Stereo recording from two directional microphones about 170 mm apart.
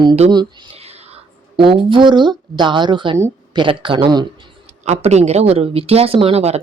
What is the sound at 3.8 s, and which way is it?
Speech, 30° right (ahead or behind).